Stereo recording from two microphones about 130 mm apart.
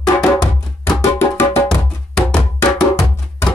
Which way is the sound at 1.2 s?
20° left (ahead or behind).